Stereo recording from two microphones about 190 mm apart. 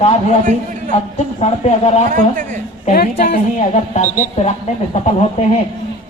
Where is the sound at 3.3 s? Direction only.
35° left (ahead or behind).